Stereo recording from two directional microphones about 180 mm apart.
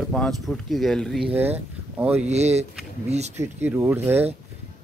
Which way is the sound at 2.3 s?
35° right (ahead or behind).